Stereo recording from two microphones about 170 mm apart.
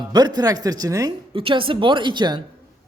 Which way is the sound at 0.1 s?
25° right (ahead or behind).